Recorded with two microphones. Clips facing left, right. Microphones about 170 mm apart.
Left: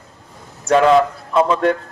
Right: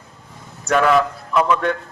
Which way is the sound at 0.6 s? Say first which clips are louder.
Left 4 dB; 30° left (ahead or behind).